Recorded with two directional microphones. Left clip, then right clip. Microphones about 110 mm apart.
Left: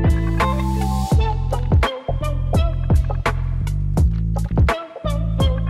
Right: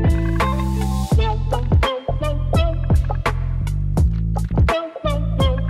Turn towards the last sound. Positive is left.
turn(degrees=0)  # may be behind; listen again after turning